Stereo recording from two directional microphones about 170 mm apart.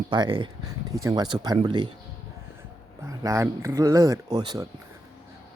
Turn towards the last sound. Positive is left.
turn(degrees=-20)  # may be behind; listen again after turning